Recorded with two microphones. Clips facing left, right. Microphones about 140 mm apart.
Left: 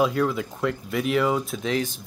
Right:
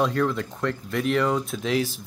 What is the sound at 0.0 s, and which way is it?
Speech, 5° left (ahead or behind).